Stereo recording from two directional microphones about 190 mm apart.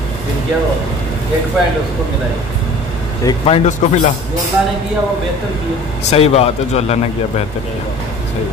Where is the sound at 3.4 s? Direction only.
35° left (ahead or behind).